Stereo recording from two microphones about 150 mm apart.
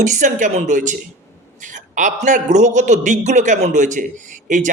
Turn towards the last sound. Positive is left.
turn(degrees=-55)  # may be behind; listen again after turning